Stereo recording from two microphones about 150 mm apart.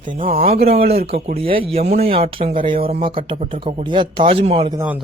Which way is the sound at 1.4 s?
35° right (ahead or behind).